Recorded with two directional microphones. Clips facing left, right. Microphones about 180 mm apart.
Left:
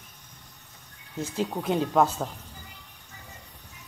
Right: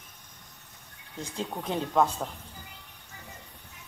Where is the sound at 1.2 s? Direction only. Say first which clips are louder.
Left 5 dB; 5° left (ahead or behind).